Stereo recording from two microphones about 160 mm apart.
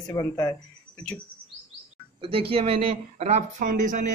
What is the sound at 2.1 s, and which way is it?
Speech, 35° right (ahead or behind).